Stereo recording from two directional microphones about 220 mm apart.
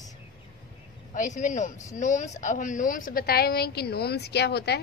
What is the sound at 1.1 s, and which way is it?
A woman's voice, 35° left (ahead or behind).